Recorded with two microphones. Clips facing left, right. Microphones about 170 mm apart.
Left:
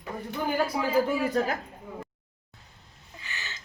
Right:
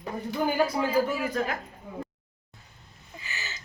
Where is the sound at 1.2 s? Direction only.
35° left (ahead or behind).